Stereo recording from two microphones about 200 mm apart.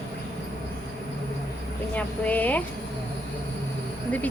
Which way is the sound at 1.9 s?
5° left (ahead or behind).